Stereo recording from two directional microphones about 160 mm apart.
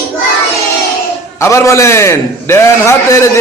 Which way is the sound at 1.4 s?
20° left (ahead or behind).